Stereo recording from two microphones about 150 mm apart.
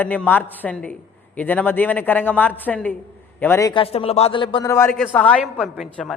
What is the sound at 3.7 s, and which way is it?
Speech, 40° left (ahead or behind).